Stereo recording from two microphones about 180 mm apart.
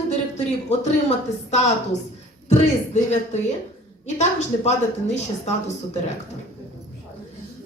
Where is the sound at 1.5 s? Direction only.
40° left (ahead or behind).